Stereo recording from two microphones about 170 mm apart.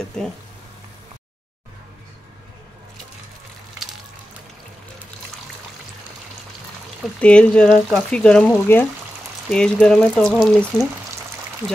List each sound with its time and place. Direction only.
7.2 s speech: 5° left (ahead or behind)